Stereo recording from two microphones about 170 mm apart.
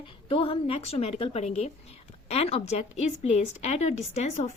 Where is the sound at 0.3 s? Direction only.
35° left (ahead or behind).